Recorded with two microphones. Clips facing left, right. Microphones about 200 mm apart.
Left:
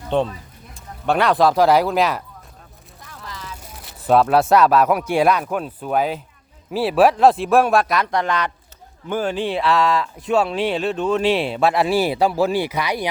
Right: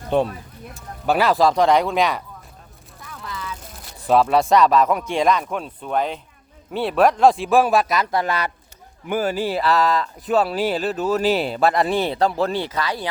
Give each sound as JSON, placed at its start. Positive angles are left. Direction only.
{"t": 0.1, "sound": "speech", "side_deg": -10}
{"t": 3.8, "sound": "speech", "side_deg": 0}